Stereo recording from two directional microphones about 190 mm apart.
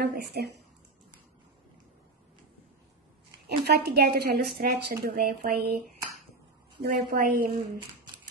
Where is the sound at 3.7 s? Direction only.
55° right (ahead or behind).